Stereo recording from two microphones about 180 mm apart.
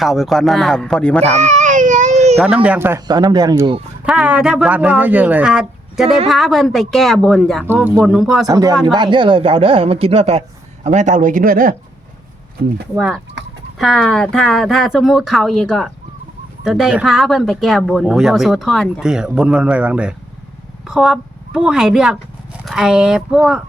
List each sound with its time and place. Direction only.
0.0 s speech: centre (ahead or behind)
1.3 s baby cry: 40° right (ahead or behind)
2.3 s a man's voice: centre (ahead or behind)
3.1 s speech: 20° right (ahead or behind)
4.0 s a man's voice: 5° right (ahead or behind)
8.4 s speech: 20° right (ahead or behind); by 11.7 s 50° right (ahead or behind)
13.0 s a woman's voice: centre (ahead or behind)